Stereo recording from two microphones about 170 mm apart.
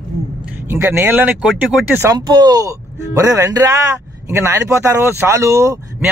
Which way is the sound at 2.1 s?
25° right (ahead or behind).